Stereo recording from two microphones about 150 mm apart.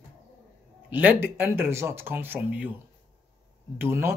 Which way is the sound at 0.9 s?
10° right (ahead or behind).